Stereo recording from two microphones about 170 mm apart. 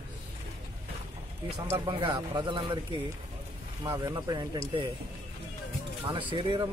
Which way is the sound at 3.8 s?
20° right (ahead or behind).